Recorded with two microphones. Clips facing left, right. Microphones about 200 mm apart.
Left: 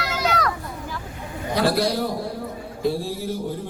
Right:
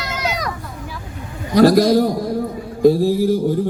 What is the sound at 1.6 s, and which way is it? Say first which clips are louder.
Speech: right 10 dB; 40° right (ahead or behind).